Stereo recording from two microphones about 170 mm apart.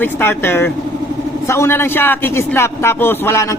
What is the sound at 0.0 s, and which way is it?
A man's voice, 10° left (ahead or behind).